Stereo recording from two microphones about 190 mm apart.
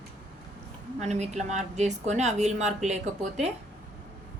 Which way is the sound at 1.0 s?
35° right (ahead or behind).